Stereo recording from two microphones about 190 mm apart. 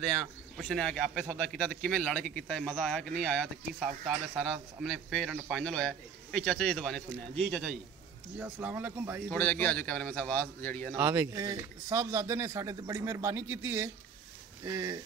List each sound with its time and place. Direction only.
0.6 s a man's voice: centre (ahead or behind)
9.3 s a man's voice: 10° left (ahead or behind)
11.0 s speech: 15° right (ahead or behind)